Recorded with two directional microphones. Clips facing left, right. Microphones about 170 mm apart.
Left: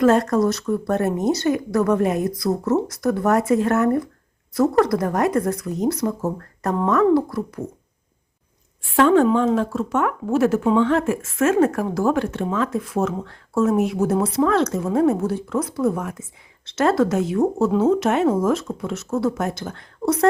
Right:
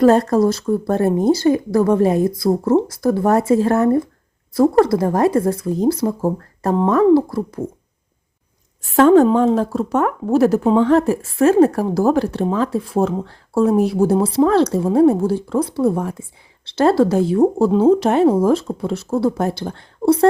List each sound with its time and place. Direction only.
0.0 s a woman's voice: 35° right (ahead or behind)
8.8 s a woman's voice: 40° right (ahead or behind)